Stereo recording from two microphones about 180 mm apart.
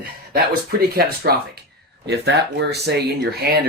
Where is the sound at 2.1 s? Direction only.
70° right (ahead or behind).